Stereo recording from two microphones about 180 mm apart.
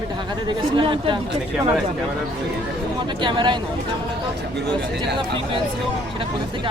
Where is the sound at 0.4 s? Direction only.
30° right (ahead or behind).